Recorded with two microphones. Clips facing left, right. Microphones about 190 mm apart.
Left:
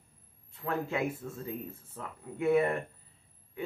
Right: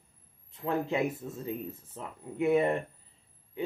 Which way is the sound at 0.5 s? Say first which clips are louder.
Right 3 dB; 20° right (ahead or behind).